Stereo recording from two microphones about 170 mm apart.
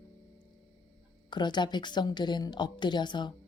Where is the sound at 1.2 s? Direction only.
25° left (ahead or behind).